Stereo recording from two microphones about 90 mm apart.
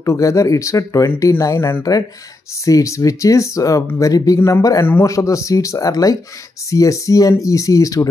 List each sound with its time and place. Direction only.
0.0 s speech: 35° left (ahead or behind)